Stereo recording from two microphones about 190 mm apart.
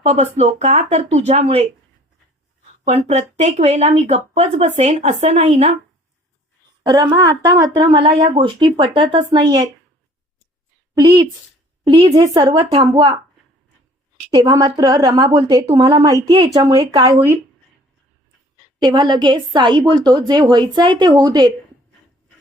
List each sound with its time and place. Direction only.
0.0 s a woman's voice: 35° right (ahead or behind)
3.1 s a woman's voice: 35° right (ahead or behind)
6.8 s a woman's voice: 25° right (ahead or behind)
11.9 s a woman's voice: 25° right (ahead or behind)
14.3 s a woman's voice: 20° right (ahead or behind)
18.8 s a woman's voice: 25° right (ahead or behind)